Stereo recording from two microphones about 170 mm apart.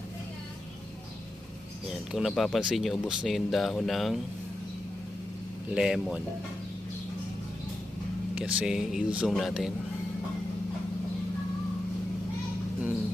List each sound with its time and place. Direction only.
1.9 s speech: centre (ahead or behind)
5.7 s speech: 5° right (ahead or behind)
8.4 s speech: 5° right (ahead or behind)